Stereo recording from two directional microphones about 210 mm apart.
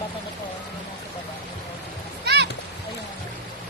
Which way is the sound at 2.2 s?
50° right (ahead or behind).